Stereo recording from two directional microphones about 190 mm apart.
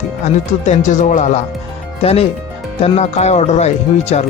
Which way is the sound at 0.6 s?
40° left (ahead or behind).